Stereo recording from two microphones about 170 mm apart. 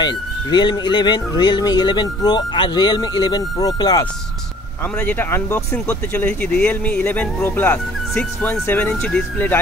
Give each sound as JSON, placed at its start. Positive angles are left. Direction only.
{"t": 0.0, "sound": "speech", "side_deg": 25}
{"t": 4.9, "sound": "speech", "side_deg": 10}